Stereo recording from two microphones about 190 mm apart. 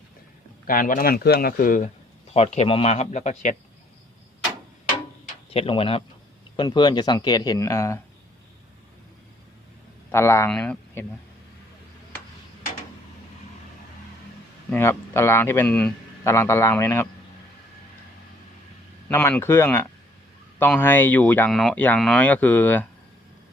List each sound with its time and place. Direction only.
0.7 s speech: 45° left (ahead or behind)
2.3 s speech: 35° left (ahead or behind)
5.2 s tick-tock: 30° left (ahead or behind)
6.6 s speech: 25° left (ahead or behind)
10.1 s speech: 15° left (ahead or behind)
14.7 s a man's voice: 15° left (ahead or behind)
19.0 s a man's voice: 10° left (ahead or behind)